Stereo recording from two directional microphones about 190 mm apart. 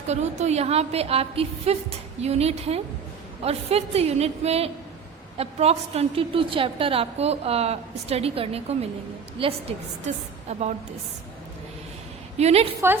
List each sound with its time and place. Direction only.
0.1 s a woman's voice: 35° right (ahead or behind)
12.4 s a woman's voice: 35° right (ahead or behind)